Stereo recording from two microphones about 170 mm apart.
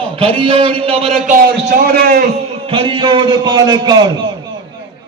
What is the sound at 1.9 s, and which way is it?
Speech, 60° right (ahead or behind).